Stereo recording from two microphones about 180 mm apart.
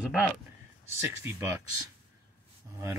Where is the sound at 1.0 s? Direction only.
15° right (ahead or behind).